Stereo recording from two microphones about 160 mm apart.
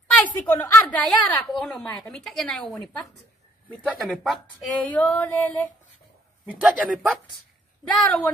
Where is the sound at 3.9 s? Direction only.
5° right (ahead or behind).